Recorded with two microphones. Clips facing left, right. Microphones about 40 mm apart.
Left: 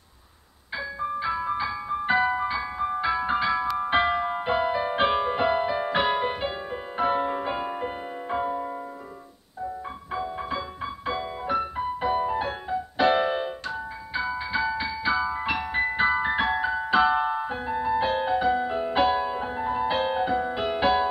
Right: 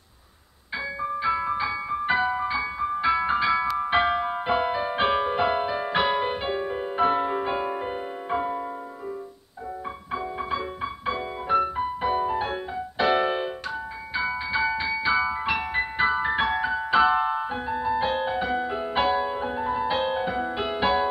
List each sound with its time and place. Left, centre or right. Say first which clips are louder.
1.2 s music: right 3 dB; centre
2.3 s music: right 1 dB; centre
3.0 s music: right 4 dB; centre
3.6 s music: right 1 dB; centre
10.1 s music: right 1 dB; centre
13.1 s music: even; right
14.8 s music: right 2 dB; centre
15.1 s music: right 2 dB; centre